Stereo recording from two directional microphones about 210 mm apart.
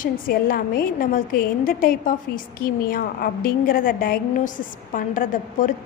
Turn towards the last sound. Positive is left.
turn(degrees=40)  # may be behind; listen again after turning